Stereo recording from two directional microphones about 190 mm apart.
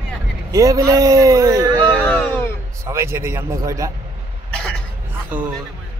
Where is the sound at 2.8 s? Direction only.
15° right (ahead or behind).